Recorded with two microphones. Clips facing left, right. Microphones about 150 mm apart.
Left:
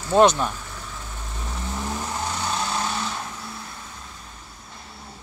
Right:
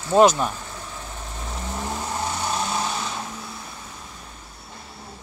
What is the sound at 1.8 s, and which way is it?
Vehicle, 15° right (ahead or behind).